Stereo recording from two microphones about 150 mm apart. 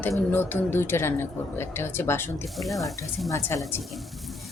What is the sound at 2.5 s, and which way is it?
Speech, centre (ahead or behind).